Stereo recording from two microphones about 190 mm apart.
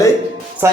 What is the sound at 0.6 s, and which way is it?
Speech, 15° right (ahead or behind).